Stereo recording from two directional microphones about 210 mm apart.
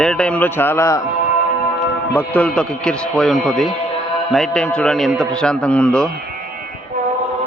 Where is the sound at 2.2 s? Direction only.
5° left (ahead or behind).